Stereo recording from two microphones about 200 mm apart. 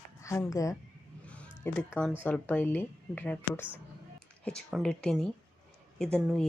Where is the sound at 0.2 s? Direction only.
15° left (ahead or behind).